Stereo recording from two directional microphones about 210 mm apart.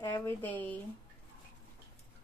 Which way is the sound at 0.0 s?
10° left (ahead or behind).